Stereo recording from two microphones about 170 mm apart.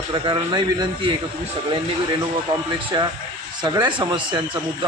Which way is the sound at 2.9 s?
25° right (ahead or behind).